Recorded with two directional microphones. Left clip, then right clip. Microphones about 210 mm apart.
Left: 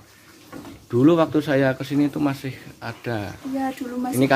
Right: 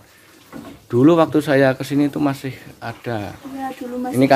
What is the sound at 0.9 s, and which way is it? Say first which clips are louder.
Speech: right 4 dB; 15° right (ahead or behind).